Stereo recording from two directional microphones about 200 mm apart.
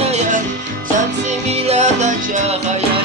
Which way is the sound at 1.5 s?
35° right (ahead or behind).